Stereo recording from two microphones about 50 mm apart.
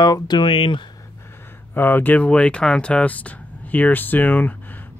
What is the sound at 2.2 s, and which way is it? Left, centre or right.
Speech, left.